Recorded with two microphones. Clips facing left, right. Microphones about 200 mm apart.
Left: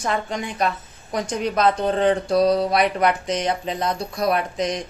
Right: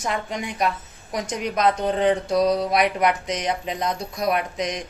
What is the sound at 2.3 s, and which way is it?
Speech, 30° left (ahead or behind).